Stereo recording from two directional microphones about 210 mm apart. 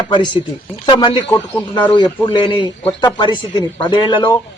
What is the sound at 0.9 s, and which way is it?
Speech, 25° left (ahead or behind).